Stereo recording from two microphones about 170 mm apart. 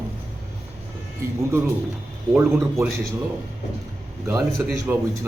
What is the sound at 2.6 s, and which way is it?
Speech, 15° right (ahead or behind).